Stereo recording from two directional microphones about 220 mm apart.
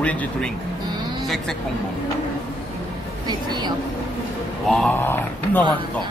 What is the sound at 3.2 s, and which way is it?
Speech, 20° right (ahead or behind).